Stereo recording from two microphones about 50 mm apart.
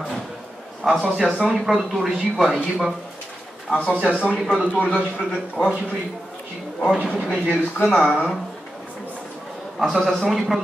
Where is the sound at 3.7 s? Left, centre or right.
Left.